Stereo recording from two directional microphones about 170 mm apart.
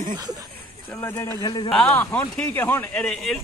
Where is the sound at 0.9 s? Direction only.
15° left (ahead or behind).